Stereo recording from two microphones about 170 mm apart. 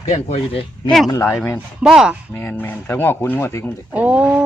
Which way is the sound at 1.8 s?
5° right (ahead or behind).